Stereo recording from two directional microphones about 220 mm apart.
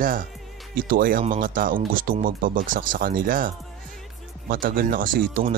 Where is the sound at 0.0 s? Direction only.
40° right (ahead or behind).